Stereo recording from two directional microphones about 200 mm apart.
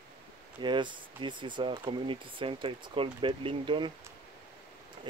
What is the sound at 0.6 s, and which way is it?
Speech, 25° right (ahead or behind).